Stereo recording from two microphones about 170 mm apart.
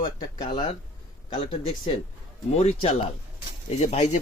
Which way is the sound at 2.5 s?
40° left (ahead or behind).